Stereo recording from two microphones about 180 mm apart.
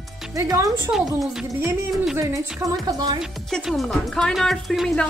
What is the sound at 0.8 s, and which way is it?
Speech, 5° right (ahead or behind).